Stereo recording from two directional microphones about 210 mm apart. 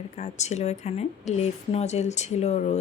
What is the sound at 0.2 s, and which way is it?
Speech, 30° left (ahead or behind).